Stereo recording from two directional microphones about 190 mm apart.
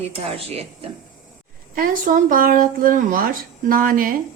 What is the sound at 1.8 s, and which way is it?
A woman's voice, 45° right (ahead or behind).